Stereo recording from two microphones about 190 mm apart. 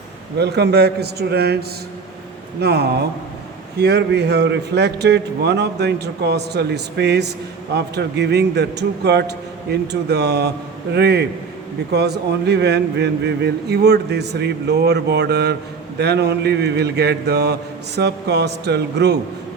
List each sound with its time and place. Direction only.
0.3 s a man's voice: 60° right (ahead or behind)
2.6 s a man's voice: 60° right (ahead or behind)